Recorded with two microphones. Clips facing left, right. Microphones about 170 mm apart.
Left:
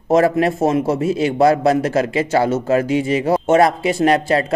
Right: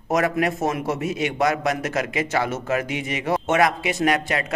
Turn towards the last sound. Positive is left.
turn(degrees=30)  # may be behind; listen again after turning